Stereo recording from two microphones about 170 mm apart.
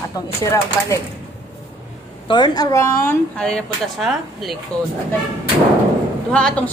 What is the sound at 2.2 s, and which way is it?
Speech, 25° left (ahead or behind).